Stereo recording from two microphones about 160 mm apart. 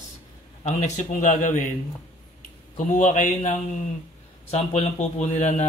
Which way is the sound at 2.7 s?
50° left (ahead or behind).